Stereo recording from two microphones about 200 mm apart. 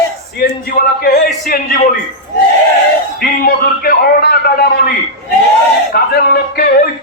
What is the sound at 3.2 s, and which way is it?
Speech, 50° left (ahead or behind).